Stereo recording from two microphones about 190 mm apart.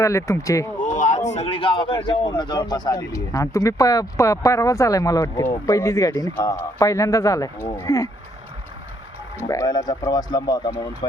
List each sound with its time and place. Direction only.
0.0 s speech: 15° left (ahead or behind)
0.8 s speech: 40° left (ahead or behind); by 8.1 s 15° left (ahead or behind)
9.4 s speech: 15° left (ahead or behind)